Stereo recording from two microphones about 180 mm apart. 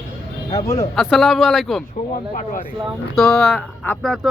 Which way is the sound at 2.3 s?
45° left (ahead or behind).